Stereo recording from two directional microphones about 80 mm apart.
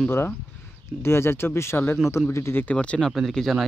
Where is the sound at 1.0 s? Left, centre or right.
Left.